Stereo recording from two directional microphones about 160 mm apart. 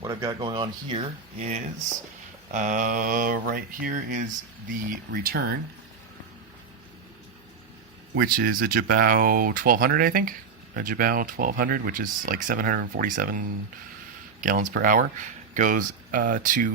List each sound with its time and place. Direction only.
0.0 s speech: 20° right (ahead or behind)
1.4 s speech: 45° right (ahead or behind); by 5.5 s 70° right (ahead or behind)
8.1 s speech: 70° right (ahead or behind)
14.4 s speech: 60° right (ahead or behind)